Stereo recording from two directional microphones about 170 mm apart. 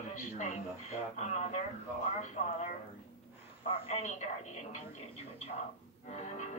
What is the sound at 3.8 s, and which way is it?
Music, 40° left (ahead or behind).